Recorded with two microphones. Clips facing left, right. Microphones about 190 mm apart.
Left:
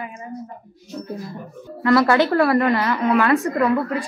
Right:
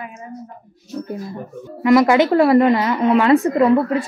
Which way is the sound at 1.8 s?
15° right (ahead or behind).